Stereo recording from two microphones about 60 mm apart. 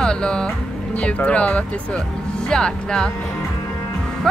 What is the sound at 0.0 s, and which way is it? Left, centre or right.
Speech, centre.